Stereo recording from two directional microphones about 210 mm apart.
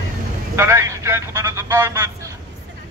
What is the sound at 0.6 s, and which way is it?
Speech, 15° right (ahead or behind).